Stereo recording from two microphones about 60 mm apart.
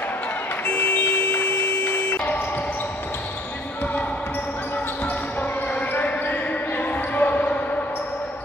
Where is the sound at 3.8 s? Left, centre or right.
Left.